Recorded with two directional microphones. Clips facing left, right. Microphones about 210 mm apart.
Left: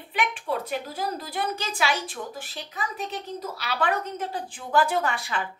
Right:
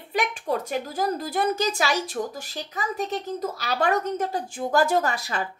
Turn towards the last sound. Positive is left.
turn(degrees=-40)  # may be behind; listen again after turning